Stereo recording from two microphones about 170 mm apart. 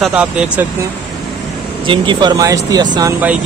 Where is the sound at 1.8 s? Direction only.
30° right (ahead or behind).